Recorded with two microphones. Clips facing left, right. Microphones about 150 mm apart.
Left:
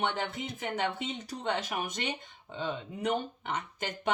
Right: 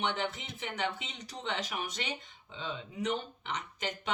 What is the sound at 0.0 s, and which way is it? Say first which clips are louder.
Speech: left 2 dB; 45° left (ahead or behind).